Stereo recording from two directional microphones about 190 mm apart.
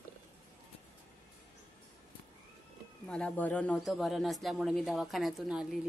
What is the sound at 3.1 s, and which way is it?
Speech, 5° left (ahead or behind).